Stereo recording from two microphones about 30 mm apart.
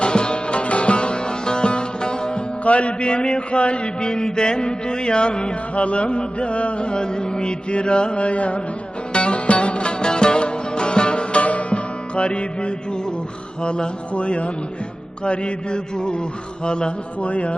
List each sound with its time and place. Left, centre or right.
0.0 s music: left
2.6 s mantra: left
4.1 s music: left
5.7 s mantra: left
9.1 s music: left
13.6 s mantra: left
14.1 s music: left
15.2 s mantra: left
17.2 s music: left